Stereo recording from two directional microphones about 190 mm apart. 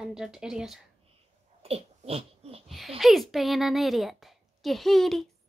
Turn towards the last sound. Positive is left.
turn(degrees=0)  # may be behind; listen again after turning